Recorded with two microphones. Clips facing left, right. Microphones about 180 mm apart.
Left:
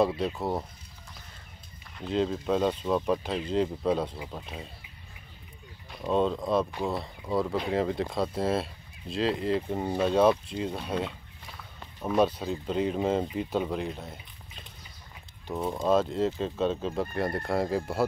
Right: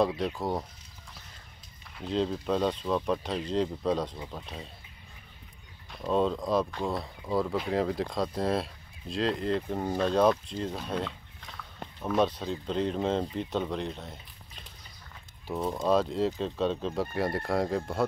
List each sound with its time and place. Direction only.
0.0 s speech: centre (ahead or behind)
2.0 s speech: centre (ahead or behind)
5.9 s speech: centre (ahead or behind)
15.4 s speech: centre (ahead or behind)